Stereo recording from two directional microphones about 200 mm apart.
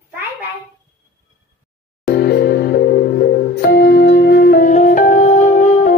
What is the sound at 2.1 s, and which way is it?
Music, 50° left (ahead or behind).